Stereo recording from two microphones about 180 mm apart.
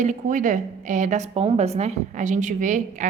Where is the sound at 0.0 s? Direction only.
45° right (ahead or behind).